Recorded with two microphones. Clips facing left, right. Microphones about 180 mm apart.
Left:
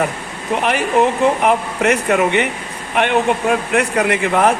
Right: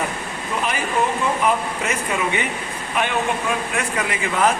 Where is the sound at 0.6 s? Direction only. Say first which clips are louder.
Left 7 dB; 70° left (ahead or behind).